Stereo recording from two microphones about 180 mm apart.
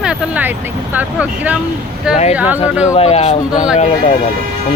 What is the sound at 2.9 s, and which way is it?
Speech, 35° left (ahead or behind).